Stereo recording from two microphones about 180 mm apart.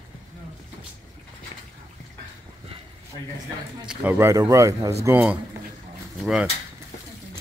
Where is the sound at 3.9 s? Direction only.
10° right (ahead or behind).